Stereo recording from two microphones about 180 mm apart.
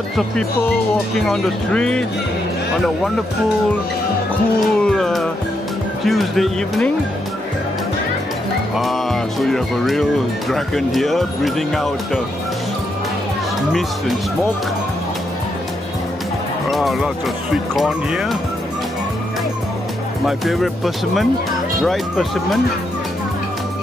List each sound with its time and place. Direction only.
1.3 s speech: 5° left (ahead or behind)
4.6 s speech: 5° left (ahead or behind)
8.7 s music: centre (ahead or behind)
10.5 s speech: centre (ahead or behind)
16.7 s speech: centre (ahead or behind)
20.2 s speech: centre (ahead or behind)